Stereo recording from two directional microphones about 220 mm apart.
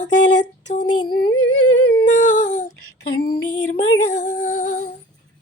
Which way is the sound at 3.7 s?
30° left (ahead or behind).